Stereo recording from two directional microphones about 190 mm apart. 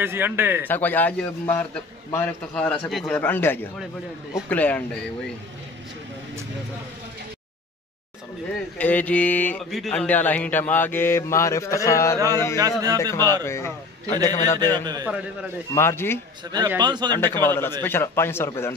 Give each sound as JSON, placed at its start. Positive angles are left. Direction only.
{"t": 0.0, "sound": "a man's voice", "side_deg": -10}
{"t": 0.7, "sound": "speech", "side_deg": 10}
{"t": 8.7, "sound": "speech", "side_deg": 10}
{"t": 12.5, "sound": "a man's voice", "side_deg": -20}
{"t": 13.0, "sound": "speech", "side_deg": 15}
{"t": 14.7, "sound": "a man's voice", "side_deg": -20}
{"t": 15.7, "sound": "speech", "side_deg": 15}
{"t": 16.5, "sound": "a man's voice", "side_deg": -20}
{"t": 17.1, "sound": "speech", "side_deg": 10}